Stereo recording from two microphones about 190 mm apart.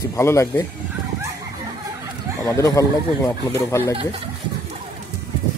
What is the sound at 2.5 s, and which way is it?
Speech, 15° left (ahead or behind).